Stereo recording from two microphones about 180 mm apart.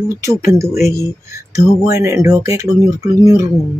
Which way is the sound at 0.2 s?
15° right (ahead or behind).